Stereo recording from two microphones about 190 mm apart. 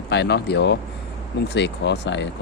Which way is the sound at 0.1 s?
65° left (ahead or behind).